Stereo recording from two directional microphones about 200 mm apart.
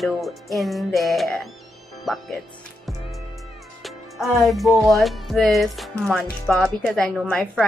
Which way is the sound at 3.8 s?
Centre (ahead or behind).